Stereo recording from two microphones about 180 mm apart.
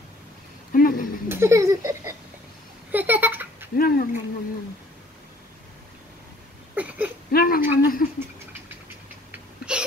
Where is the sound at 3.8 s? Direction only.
55° left (ahead or behind).